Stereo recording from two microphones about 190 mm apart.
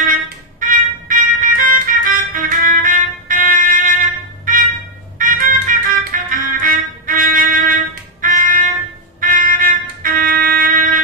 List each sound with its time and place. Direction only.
0.1 s music: 45° right (ahead or behind)
4.5 s a sound: 45° right (ahead or behind)
5.2 s music: 45° right (ahead or behind)